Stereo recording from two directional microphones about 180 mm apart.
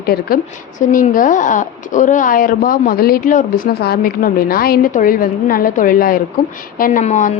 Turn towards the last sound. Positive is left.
turn(degrees=45)  # may be behind; listen again after turning